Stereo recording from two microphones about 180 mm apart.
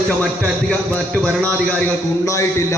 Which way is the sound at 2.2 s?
15° left (ahead or behind).